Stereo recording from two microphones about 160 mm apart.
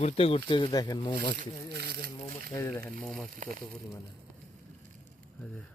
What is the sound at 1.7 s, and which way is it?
Speech, 80° right.